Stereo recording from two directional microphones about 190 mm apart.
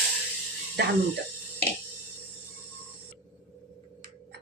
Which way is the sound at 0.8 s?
65° right (ahead or behind).